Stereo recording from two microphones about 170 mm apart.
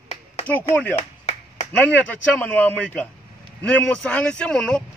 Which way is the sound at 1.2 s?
40° left (ahead or behind).